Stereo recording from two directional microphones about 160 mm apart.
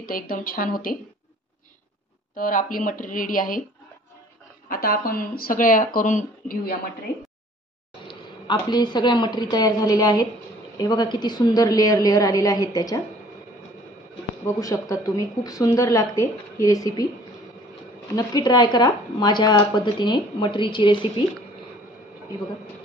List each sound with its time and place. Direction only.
0.0 s speech: 65° left (ahead or behind)
2.3 s speech: 60° left (ahead or behind)
4.6 s speech: 65° left (ahead or behind)
8.1 s speech: 25° left (ahead or behind)
14.6 s speech: 20° left (ahead or behind)
18.1 s speech: 25° left (ahead or behind)